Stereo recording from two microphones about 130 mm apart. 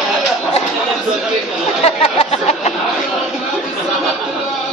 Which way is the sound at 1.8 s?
50° left (ahead or behind).